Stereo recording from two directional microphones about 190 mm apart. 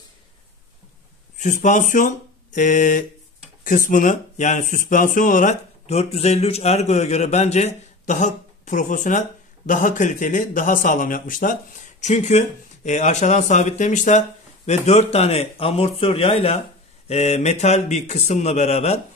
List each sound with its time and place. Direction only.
1.4 s speech: 40° left (ahead or behind)